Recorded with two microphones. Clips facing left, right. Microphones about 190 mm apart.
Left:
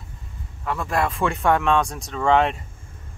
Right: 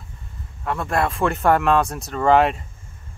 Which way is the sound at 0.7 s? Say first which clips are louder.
Right 1 dB; centre (ahead or behind).